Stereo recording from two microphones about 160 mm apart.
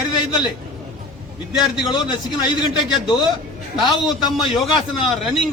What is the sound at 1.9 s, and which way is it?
Speech, 25° left (ahead or behind).